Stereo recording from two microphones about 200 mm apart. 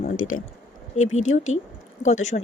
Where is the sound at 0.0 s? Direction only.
40° left (ahead or behind).